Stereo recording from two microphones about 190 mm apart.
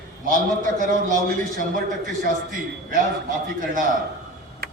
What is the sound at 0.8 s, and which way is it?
A man's voice, 45° right (ahead or behind).